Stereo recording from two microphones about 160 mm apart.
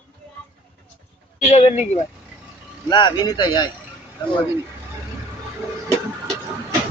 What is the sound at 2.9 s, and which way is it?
Speech, 30° left (ahead or behind).